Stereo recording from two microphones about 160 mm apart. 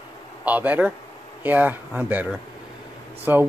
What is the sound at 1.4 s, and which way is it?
Speech, 10° right (ahead or behind).